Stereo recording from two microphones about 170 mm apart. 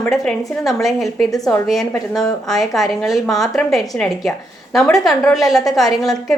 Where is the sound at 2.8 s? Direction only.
Centre (ahead or behind).